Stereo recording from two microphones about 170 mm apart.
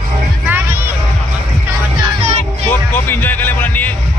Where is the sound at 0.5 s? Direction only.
10° right (ahead or behind).